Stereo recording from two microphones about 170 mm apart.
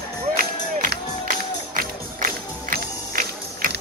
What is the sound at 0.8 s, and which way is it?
Music, 55° right (ahead or behind).